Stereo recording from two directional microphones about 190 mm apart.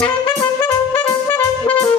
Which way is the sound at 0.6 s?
10° left (ahead or behind).